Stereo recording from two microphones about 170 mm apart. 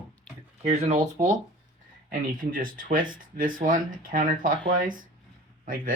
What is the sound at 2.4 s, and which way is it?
Speech, 55° right (ahead or behind).